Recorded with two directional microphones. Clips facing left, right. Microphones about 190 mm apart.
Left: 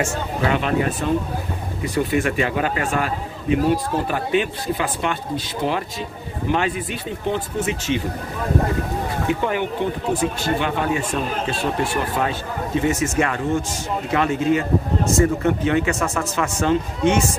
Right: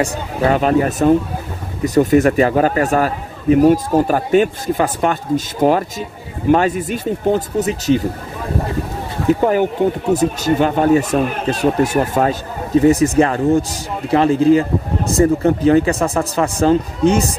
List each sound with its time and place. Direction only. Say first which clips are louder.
0.4 s a man's voice: right 7 dB; 40° right (ahead or behind)
9.3 s speech: right 10 dB; 40° right (ahead or behind)